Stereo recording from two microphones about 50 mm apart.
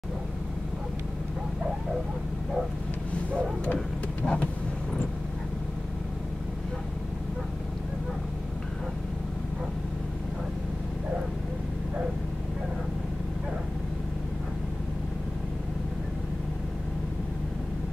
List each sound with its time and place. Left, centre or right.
4.2 s vehicle: left